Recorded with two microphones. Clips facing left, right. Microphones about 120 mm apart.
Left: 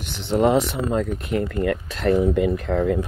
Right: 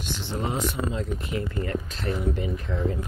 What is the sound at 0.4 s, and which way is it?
Speech, 75° left (ahead or behind).